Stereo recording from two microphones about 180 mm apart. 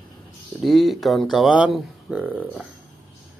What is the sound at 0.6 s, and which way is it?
Speech, centre (ahead or behind).